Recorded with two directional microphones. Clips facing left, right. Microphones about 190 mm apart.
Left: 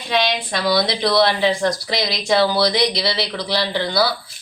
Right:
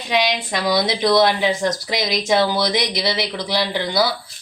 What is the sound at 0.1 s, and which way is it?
Speech, 15° right (ahead or behind).